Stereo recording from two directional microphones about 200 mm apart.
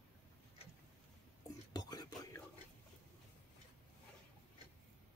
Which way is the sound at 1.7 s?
20° left (ahead or behind).